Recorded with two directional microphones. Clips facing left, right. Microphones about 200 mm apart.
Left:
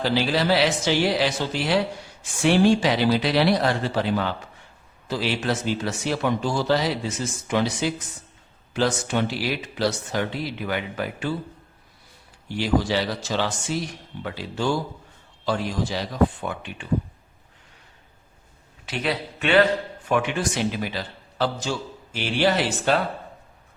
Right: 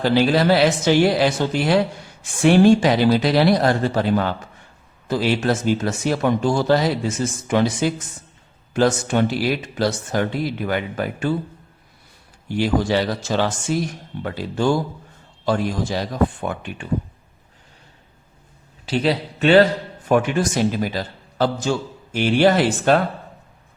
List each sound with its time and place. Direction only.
0.0 s a man's voice: 50° right (ahead or behind)
12.5 s a man's voice: 50° right (ahead or behind)
18.9 s a man's voice: 30° right (ahead or behind); by 23.0 s 50° right (ahead or behind)